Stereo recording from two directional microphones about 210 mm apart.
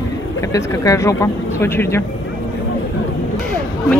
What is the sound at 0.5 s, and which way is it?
Speech, 15° left (ahead or behind).